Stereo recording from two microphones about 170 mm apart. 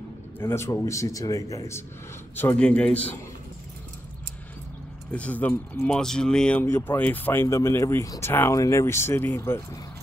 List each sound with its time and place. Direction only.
0.4 s speech: 15° left (ahead or behind)
5.1 s speech: 10° left (ahead or behind)